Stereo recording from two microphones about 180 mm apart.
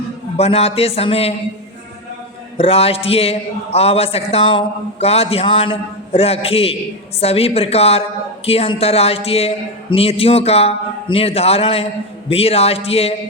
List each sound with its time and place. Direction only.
0.3 s a man's voice: 35° left (ahead or behind)
2.6 s a man's voice: 35° left (ahead or behind)